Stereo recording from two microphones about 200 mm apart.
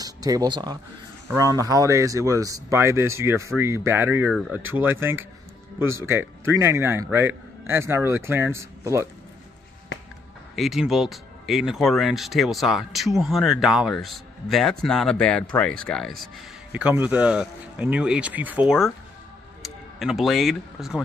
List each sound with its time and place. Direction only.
0.0 s a man's voice: 20° right (ahead or behind)
4.3 s speech: centre (ahead or behind)
4.7 s a man's voice: 10° right (ahead or behind)
10.5 s speech: centre (ahead or behind)
16.7 s a man's voice: 10° right (ahead or behind)